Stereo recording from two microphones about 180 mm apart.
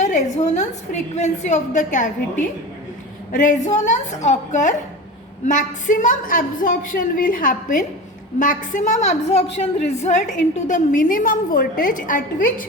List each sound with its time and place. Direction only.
0.0 s a woman's voice: 40° left (ahead or behind)
3.3 s a woman's voice: 45° left (ahead or behind)